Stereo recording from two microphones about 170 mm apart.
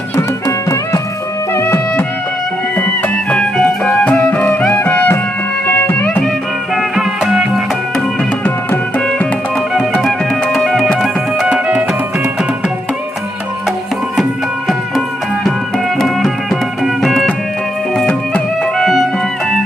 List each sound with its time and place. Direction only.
0.2 s music: 15° left (ahead or behind)
3.2 s music: 5° left (ahead or behind)
8.4 s music: 10° left (ahead or behind); by 12.5 s 5° right (ahead or behind)
16.0 s music: centre (ahead or behind)